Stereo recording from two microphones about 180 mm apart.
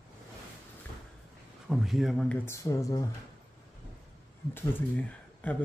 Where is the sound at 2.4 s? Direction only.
15° left (ahead or behind).